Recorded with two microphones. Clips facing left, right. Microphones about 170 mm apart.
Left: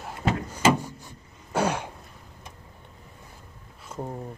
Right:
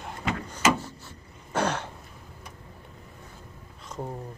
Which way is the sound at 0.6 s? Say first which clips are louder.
Left 3 dB; 30° left (ahead or behind).